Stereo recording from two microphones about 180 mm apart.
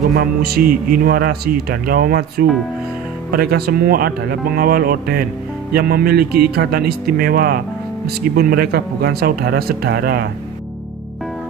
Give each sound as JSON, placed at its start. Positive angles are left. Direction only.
{"t": 0.1, "sound": "speech", "side_deg": -60}